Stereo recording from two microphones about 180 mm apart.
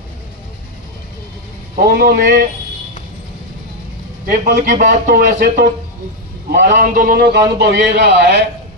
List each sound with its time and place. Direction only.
1.8 s a man's voice: 60° right (ahead or behind)
4.3 s speech: 50° right (ahead or behind)
6.7 s a man's voice: 50° right (ahead or behind); by 8.5 s 80° right